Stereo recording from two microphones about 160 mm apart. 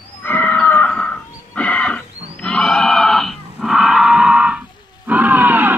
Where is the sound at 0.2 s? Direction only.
10° left (ahead or behind).